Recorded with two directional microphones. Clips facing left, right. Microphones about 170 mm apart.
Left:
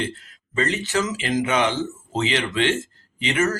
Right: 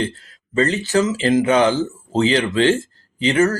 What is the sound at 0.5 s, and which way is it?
Speech, 35° right (ahead or behind).